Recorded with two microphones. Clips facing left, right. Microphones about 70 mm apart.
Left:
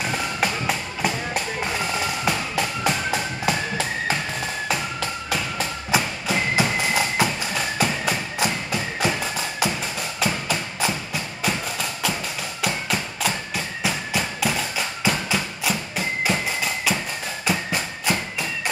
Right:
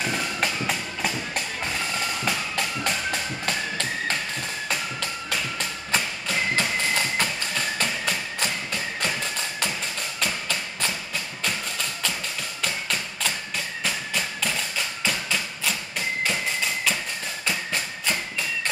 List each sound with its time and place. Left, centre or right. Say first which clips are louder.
0.0 s music: left 2 dB; centre
13.8 s tap: left 5 dB; centre
15.7 s music: left 4 dB; centre
17.5 s music: left 4 dB; centre